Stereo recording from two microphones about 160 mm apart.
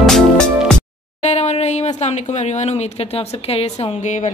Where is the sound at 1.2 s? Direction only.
45° left (ahead or behind).